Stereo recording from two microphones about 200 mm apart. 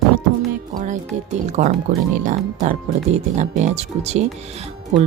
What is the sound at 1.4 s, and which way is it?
Speech, 35° right (ahead or behind).